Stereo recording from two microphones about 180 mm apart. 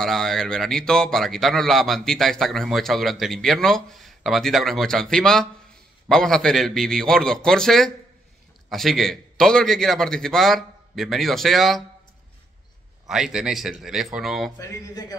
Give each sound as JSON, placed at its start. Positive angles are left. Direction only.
{"t": 0.0, "sound": "a man's voice", "side_deg": 0}
{"t": 13.1, "sound": "a man's voice", "side_deg": -5}
{"t": 14.6, "sound": "speech", "side_deg": 20}